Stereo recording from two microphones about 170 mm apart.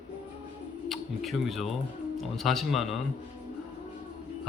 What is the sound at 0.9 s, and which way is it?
A man's voice, centre (ahead or behind).